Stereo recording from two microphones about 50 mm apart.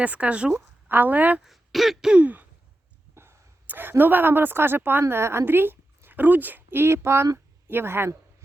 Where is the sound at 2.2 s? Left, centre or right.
Right.